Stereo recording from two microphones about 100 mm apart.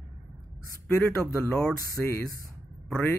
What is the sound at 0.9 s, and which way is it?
Speech, 20° left (ahead or behind).